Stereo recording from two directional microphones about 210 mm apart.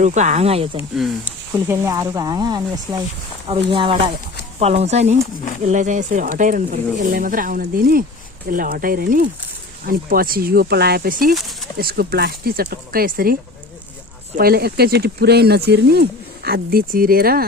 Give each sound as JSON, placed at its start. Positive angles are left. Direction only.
{"t": 0.0, "sound": "speech", "side_deg": -35}
{"t": 1.6, "sound": "speech", "side_deg": -15}
{"t": 11.3, "sound": "speech", "side_deg": 0}
{"t": 11.8, "sound": "speech", "side_deg": -45}